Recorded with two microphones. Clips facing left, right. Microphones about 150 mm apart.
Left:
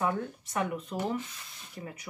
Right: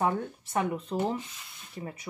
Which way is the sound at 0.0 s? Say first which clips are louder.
Right 2 dB; 30° right (ahead or behind).